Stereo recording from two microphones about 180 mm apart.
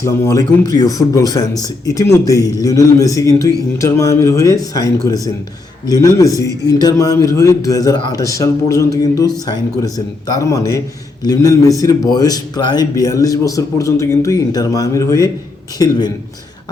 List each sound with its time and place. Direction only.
0.0 s a man's voice: 20° left (ahead or behind)
10.4 s a man's voice: 15° left (ahead or behind)